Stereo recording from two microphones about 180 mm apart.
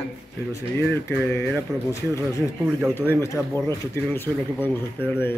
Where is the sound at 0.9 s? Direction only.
15° left (ahead or behind).